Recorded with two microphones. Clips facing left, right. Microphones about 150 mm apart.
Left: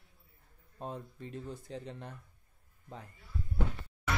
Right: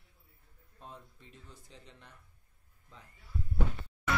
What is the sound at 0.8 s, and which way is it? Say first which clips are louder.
Speech: left 10 dB; 55° left (ahead or behind).